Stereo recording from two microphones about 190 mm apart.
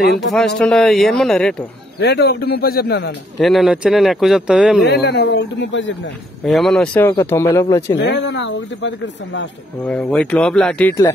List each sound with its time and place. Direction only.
0.0 s speech: 60° left (ahead or behind)
0.6 s speech: 5° left (ahead or behind)
2.0 s speech: 60° left (ahead or behind)
3.3 s speech: centre (ahead or behind)
4.8 s speech: 60° left (ahead or behind)
6.4 s speech: centre (ahead or behind)
6.9 s speech: 10° left (ahead or behind)
7.9 s speech: 65° left (ahead or behind)
9.8 s speech: 5° left (ahead or behind)